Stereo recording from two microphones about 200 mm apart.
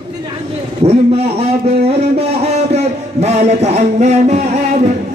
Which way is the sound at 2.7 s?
35° right (ahead or behind).